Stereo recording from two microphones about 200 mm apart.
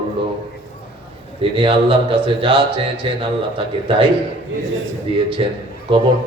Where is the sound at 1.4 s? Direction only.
25° right (ahead or behind).